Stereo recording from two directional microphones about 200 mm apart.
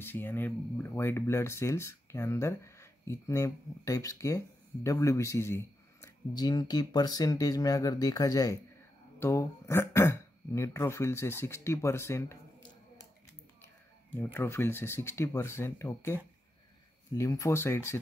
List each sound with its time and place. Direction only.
0.0 s speech: 10° left (ahead or behind)
14.1 s speech: 10° left (ahead or behind)
17.2 s speech: 15° left (ahead or behind)